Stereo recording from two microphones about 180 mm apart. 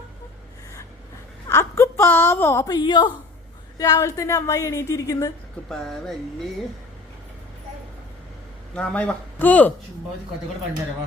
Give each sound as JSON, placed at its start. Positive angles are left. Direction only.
{"t": 1.5, "sound": "a woman's voice", "side_deg": 15}
{"t": 5.6, "sound": "a sound", "side_deg": 5}
{"t": 8.7, "sound": "a woman's voice", "side_deg": 5}